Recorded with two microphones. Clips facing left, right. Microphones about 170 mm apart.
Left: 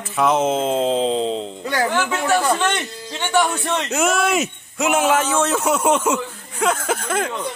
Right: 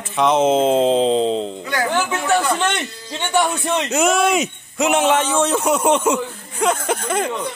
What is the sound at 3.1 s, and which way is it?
Speech, 15° right (ahead or behind).